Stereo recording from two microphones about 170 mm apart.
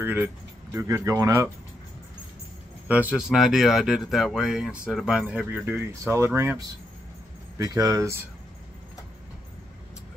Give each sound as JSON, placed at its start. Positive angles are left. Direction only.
{"t": 0.0, "sound": "speech", "side_deg": -15}
{"t": 2.9, "sound": "speech", "side_deg": -10}